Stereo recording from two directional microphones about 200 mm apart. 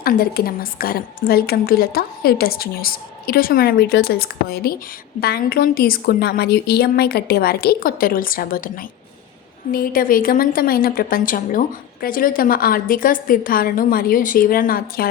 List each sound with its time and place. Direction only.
0.0 s a woman's voice: 50° left (ahead or behind)